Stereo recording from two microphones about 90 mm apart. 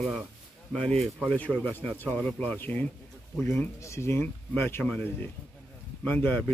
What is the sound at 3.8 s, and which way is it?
Speech, 30° left (ahead or behind).